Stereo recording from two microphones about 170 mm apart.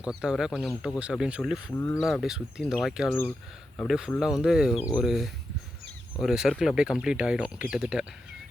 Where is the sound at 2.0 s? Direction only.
Centre (ahead or behind).